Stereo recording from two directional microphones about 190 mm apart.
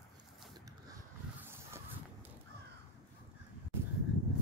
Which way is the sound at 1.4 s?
10° right (ahead or behind).